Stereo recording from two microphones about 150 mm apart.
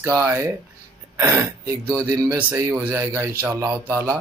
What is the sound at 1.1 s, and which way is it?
Speech, 20° right (ahead or behind).